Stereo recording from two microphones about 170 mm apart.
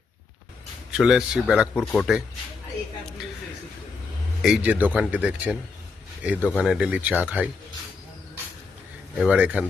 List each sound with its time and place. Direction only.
0.9 s speech: 5° right (ahead or behind)
4.4 s speech: 5° right (ahead or behind)
9.1 s speech: 5° right (ahead or behind)